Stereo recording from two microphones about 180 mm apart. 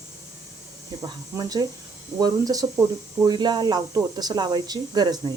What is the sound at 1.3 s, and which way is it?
Speech, 20° right (ahead or behind).